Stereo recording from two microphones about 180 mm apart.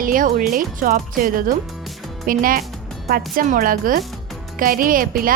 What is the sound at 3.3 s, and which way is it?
Speech, 50° right (ahead or behind).